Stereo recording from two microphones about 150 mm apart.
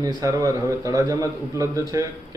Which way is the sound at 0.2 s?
20° right (ahead or behind).